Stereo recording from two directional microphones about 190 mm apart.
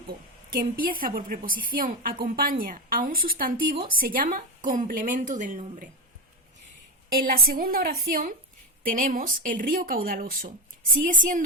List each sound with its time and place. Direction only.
0.5 s a woman's voice: 50° right (ahead or behind)
7.2 s a woman's voice: 50° right (ahead or behind)